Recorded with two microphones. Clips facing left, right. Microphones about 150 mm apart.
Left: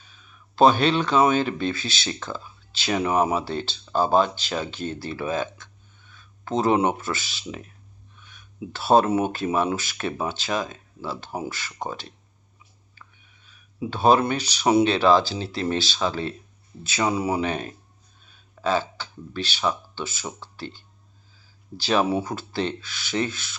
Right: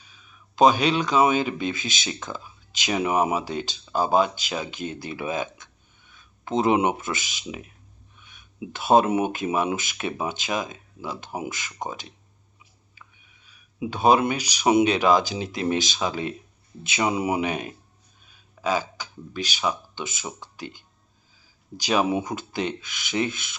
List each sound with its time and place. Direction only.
0.5 s speech: 10° right (ahead or behind)